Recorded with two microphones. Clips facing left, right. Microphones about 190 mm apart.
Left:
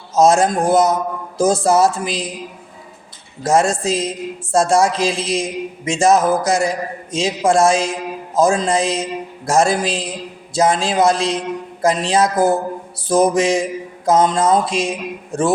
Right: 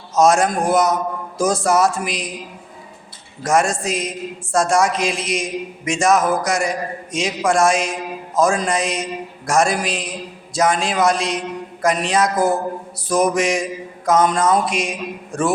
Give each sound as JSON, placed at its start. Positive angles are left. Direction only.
{"t": 0.2, "sound": "a man's voice", "side_deg": 25}
{"t": 3.4, "sound": "a man's voice", "side_deg": 25}